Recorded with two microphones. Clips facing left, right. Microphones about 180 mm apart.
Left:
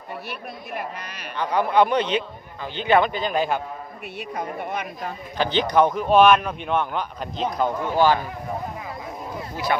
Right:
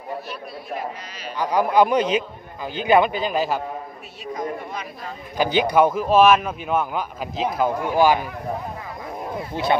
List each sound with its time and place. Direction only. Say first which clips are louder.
0.3 s speech: right 2 dB; 60° left (ahead or behind)
1.4 s speech: right 2 dB; 10° right (ahead or behind)
4.2 s speech: right 2 dB; 60° left (ahead or behind)
5.4 s speech: right 2 dB; 10° right (ahead or behind)
9.6 s a man's voice: right 4 dB; 25° right (ahead or behind)